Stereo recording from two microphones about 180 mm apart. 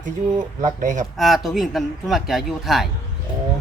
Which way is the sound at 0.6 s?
45° right (ahead or behind).